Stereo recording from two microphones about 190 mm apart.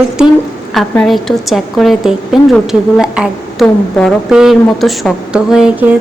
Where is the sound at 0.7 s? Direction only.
Centre (ahead or behind).